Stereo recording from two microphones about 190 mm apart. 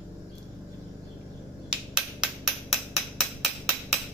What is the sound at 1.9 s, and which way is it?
Hammer, 5° right (ahead or behind).